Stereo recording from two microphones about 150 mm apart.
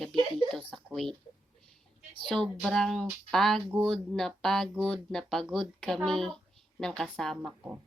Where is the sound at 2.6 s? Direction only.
Centre (ahead or behind).